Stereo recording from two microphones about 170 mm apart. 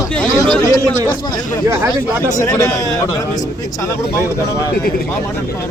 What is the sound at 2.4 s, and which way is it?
A man's voice, 20° left (ahead or behind).